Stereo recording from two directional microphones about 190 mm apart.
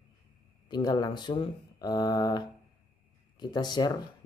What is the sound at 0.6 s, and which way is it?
Speech, 20° left (ahead or behind).